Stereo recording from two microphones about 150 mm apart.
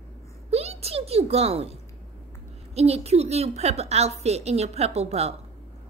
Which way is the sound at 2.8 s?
45° right (ahead or behind).